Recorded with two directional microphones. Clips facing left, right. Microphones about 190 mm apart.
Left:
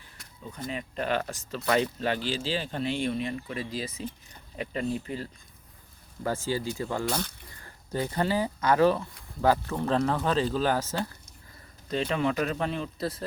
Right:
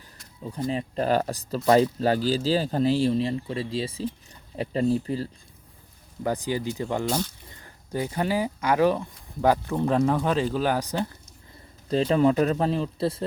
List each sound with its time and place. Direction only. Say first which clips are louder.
0.5 s speech: right 7 dB; 35° right (ahead or behind)
6.2 s speech: right 3 dB; 15° right (ahead or behind)
11.9 s speech: right 7 dB; 35° right (ahead or behind)